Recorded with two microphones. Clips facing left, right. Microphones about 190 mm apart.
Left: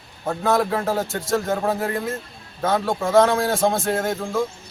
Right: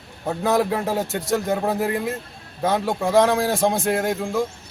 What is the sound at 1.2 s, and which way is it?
Speech, 15° right (ahead or behind).